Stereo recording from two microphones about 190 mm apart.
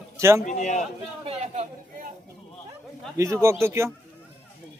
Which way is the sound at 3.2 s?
15° right (ahead or behind).